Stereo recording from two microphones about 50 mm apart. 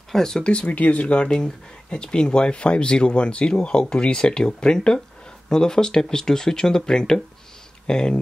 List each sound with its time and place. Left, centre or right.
0.1 s speech: centre